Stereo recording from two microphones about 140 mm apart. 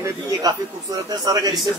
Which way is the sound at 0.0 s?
25° right (ahead or behind).